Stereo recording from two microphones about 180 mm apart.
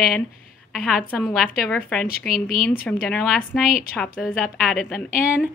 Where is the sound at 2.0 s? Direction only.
55° left (ahead or behind).